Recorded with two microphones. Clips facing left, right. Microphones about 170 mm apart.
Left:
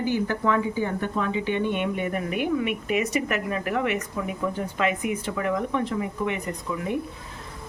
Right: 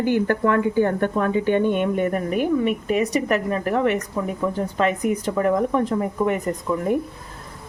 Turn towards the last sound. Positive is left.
turn(degrees=-45)  # may be behind; listen again after turning